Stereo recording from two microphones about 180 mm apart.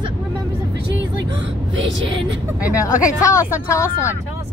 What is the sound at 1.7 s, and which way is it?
Speech, 90° right.